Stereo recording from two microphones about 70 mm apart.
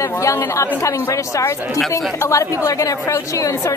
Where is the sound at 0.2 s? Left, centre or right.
Left.